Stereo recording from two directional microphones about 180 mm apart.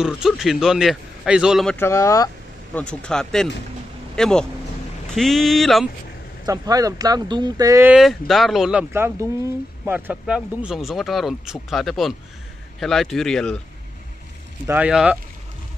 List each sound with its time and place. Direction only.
0.0 s speech: 5° right (ahead or behind)
1.8 s speech: 15° left (ahead or behind)
2.7 s speech: 5° left (ahead or behind)
6.4 s speech: 20° right (ahead or behind)
7.9 s speech: centre (ahead or behind)
14.7 s speech: 5° right (ahead or behind)